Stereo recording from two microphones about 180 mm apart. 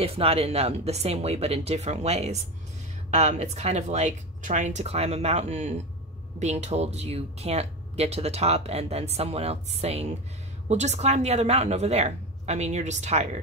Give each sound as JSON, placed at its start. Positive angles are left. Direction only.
{"t": 0.0, "sound": "speech", "side_deg": -30}